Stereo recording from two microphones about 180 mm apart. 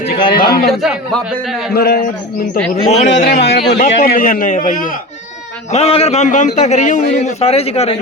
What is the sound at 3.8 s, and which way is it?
A man's voice, 50° left (ahead or behind).